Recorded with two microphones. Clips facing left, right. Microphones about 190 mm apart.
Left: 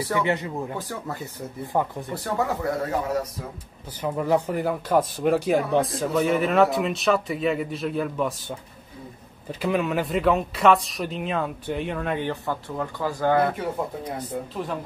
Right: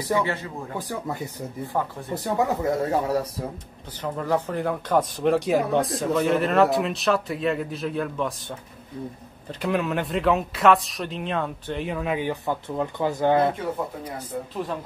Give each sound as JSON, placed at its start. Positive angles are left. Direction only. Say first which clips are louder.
{"t": 0.2, "sound": "speech", "louder": "left 2 dB", "side_deg": 20}
{"t": 0.7, "sound": "speech", "louder": "right 2 dB", "side_deg": -15}
{"t": 1.7, "sound": "speech", "louder": "left 3 dB", "side_deg": 15}
{"t": 2.1, "sound": "speech", "louder": "right 2 dB", "side_deg": -20}
{"t": 4.0, "sound": "speech", "louder": "left 2 dB", "side_deg": 10}